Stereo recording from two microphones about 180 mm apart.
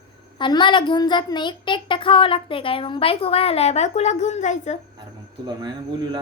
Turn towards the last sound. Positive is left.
turn(degrees=-25)  # may be behind; listen again after turning